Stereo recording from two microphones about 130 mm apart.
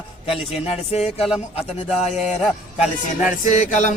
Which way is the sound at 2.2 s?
5° right (ahead or behind).